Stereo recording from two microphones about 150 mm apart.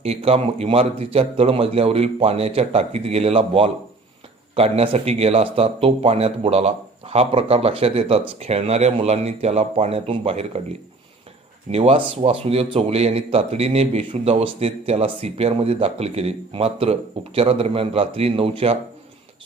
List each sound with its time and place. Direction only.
0.0 s a man's voice: 40° right (ahead or behind)
11.7 s a man's voice: 40° right (ahead or behind)